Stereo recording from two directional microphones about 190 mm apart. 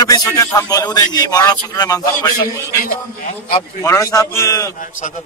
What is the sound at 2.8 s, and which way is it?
Speech, 50° left (ahead or behind).